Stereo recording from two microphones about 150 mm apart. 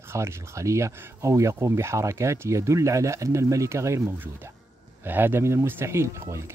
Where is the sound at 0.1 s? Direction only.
20° right (ahead or behind).